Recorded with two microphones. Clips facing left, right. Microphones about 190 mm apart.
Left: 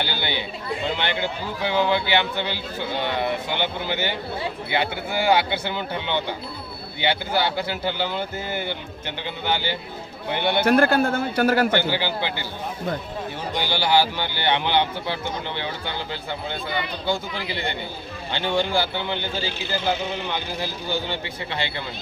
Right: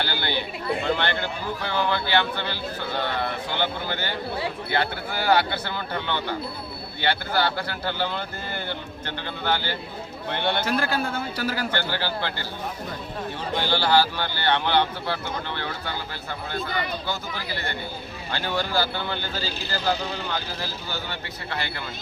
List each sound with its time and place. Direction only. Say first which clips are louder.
0.0 s a man's voice: even; 15° left (ahead or behind)
10.6 s a man's voice: left 7 dB; 60° left (ahead or behind)
11.8 s a man's voice: left 3 dB; 15° left (ahead or behind)
13.5 s a man's voice: even; 15° left (ahead or behind)